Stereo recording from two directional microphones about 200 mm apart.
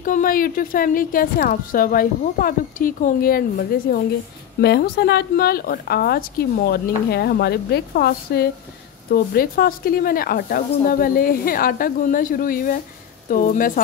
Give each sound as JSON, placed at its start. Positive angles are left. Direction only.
{"t": 0.0, "sound": "a woman's voice", "side_deg": 40}